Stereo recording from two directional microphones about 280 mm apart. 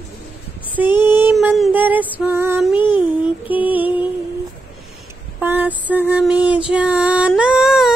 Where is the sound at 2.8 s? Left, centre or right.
Centre.